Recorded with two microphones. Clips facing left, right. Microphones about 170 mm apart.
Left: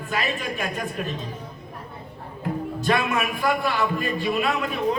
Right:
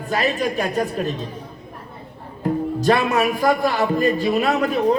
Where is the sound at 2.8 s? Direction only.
40° right (ahead or behind).